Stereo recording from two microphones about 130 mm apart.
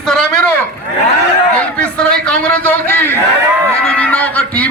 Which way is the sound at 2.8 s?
15° left (ahead or behind).